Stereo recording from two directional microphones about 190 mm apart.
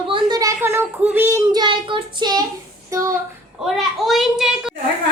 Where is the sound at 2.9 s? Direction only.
15° right (ahead or behind).